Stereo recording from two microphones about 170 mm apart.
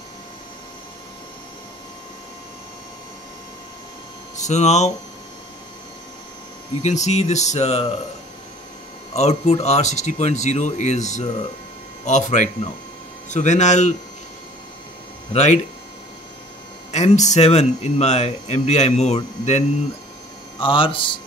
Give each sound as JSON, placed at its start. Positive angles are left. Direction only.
{"t": 4.4, "sound": "speech", "side_deg": 40}
{"t": 6.8, "sound": "speech", "side_deg": 40}
{"t": 9.1, "sound": "speech", "side_deg": 40}
{"t": 15.3, "sound": "speech", "side_deg": 45}
{"t": 16.9, "sound": "speech", "side_deg": 45}
{"t": 20.6, "sound": "speech", "side_deg": 30}